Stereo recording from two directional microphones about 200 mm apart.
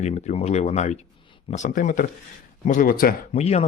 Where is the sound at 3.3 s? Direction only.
30° left (ahead or behind).